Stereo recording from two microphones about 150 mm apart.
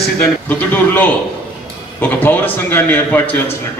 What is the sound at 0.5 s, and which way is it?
A man's voice, 10° left (ahead or behind).